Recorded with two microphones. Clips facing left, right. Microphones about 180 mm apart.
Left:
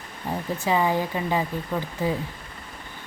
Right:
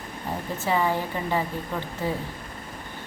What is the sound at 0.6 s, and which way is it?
Speech, 15° left (ahead or behind).